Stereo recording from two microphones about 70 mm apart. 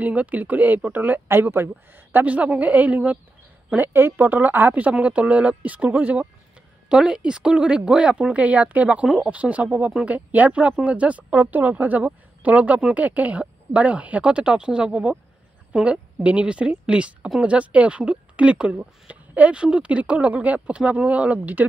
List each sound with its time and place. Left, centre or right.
0.0 s speech: right